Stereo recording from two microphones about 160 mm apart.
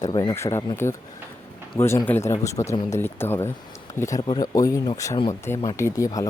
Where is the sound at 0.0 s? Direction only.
25° left (ahead or behind).